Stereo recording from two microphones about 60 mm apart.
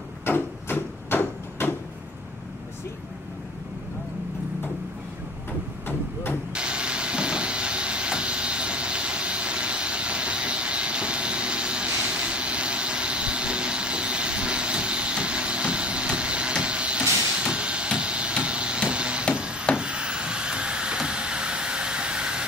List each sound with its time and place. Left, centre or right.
0.2 s a sound: left
6.5 s vehicle: centre
17.4 s hammer: centre
19.7 s wood: centre